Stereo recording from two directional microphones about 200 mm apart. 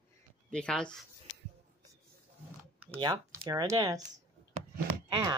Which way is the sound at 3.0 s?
20° right (ahead or behind).